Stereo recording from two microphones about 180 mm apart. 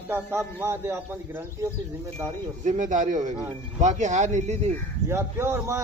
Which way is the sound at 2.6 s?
45° right (ahead or behind).